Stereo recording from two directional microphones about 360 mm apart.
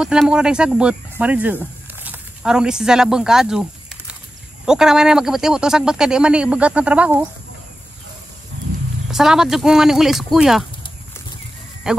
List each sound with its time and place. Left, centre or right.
0.0 s speech: centre
4.6 s speech: centre
9.1 s speech: centre